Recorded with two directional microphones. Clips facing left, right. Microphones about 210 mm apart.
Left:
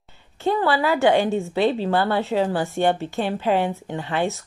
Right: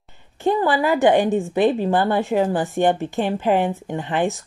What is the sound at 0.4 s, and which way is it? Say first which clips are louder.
A woman's voice: right 2 dB; 15° right (ahead or behind).